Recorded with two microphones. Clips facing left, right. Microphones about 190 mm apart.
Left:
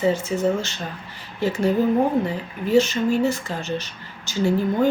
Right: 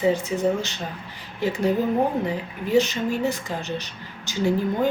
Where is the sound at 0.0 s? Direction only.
15° right (ahead or behind).